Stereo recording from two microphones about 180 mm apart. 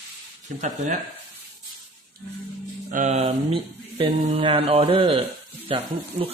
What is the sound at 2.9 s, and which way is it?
Speech, 40° right (ahead or behind).